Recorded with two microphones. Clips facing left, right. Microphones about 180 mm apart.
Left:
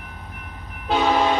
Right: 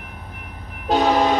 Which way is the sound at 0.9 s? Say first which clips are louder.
Right 2 dB; 40° right (ahead or behind).